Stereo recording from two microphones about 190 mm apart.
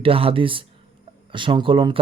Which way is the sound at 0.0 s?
30° right (ahead or behind).